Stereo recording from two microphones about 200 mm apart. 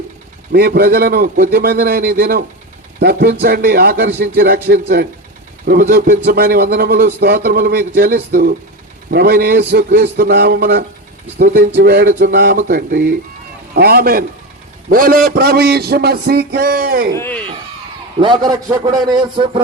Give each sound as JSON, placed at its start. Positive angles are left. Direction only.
{"t": 0.5, "sound": "a man's voice", "side_deg": -50}
{"t": 17.2, "sound": "speech", "side_deg": 10}
{"t": 18.2, "sound": "a man's voice", "side_deg": -20}